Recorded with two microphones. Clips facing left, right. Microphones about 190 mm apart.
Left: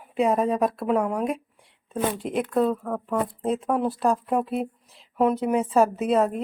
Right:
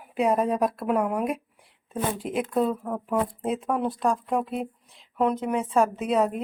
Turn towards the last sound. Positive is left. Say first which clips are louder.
# left 2 dB
turn(degrees=0)  # may be behind; listen again after turning